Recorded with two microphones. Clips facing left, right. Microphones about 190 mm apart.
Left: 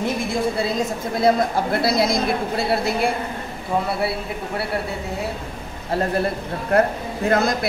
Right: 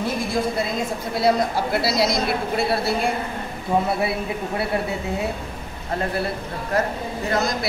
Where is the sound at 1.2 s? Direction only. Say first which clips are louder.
Left 2 dB; 50° left (ahead or behind).